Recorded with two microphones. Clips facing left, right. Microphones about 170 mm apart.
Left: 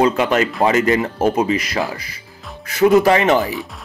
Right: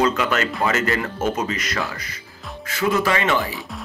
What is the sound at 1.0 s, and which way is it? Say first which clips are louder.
Speech: left 6 dB; 35° left (ahead or behind).